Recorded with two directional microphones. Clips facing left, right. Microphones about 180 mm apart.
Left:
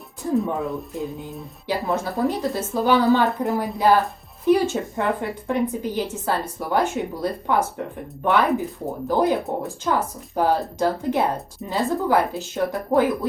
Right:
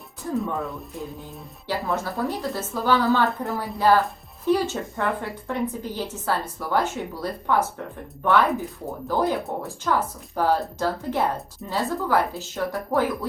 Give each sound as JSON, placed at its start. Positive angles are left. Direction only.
{"t": 0.4, "sound": "a woman's voice", "side_deg": 15}
{"t": 0.7, "sound": "music", "side_deg": 0}
{"t": 1.6, "sound": "a woman's voice", "side_deg": 15}